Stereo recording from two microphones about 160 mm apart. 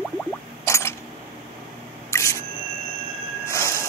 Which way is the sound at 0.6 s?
20° left (ahead or behind).